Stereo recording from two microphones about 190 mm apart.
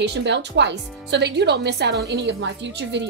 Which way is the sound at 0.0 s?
65° right (ahead or behind).